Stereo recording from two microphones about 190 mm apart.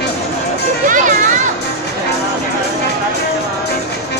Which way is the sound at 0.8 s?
45° right (ahead or behind).